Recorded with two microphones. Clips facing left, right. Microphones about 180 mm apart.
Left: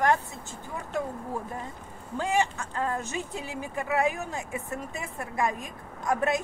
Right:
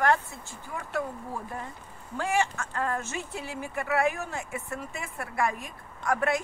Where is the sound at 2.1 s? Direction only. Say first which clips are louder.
Left 1 dB; 15° left (ahead or behind).